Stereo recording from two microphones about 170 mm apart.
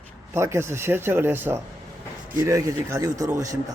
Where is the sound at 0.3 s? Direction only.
15° right (ahead or behind).